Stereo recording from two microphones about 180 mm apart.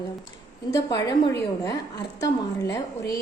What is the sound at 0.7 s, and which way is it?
A woman's voice, 20° left (ahead or behind).